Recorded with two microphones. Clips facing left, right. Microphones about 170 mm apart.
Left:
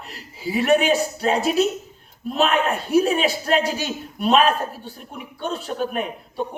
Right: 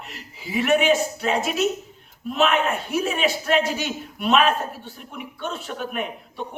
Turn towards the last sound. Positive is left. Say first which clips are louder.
# left 3 dB
turn(degrees=35)  # may be behind; listen again after turning